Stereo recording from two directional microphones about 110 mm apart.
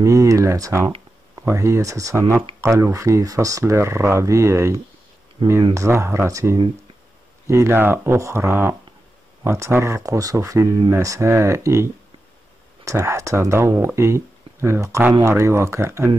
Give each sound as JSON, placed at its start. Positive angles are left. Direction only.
{"t": 0.0, "sound": "speech", "side_deg": -30}
{"t": 5.4, "sound": "speech", "side_deg": -45}
{"t": 5.8, "sound": "speech", "side_deg": -25}